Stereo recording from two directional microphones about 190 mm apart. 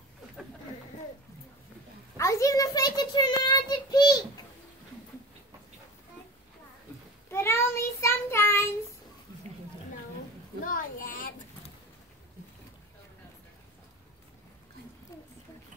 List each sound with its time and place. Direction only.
2.1 s child singing: 15° left (ahead or behind)
7.2 s child singing: 15° left (ahead or behind)
10.6 s children playing: 45° left (ahead or behind)